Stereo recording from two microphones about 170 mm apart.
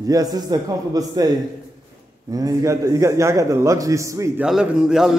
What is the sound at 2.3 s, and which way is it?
A man's voice, 20° right (ahead or behind).